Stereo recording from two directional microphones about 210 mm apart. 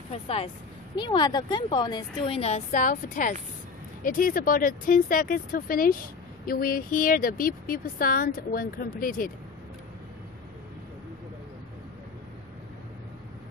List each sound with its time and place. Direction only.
0.1 s a woman's voice: 30° left (ahead or behind)